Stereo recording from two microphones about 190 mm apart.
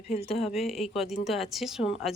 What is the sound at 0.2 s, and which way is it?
Speech, 30° left (ahead or behind).